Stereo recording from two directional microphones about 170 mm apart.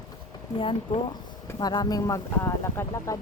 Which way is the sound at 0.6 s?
30° left (ahead or behind).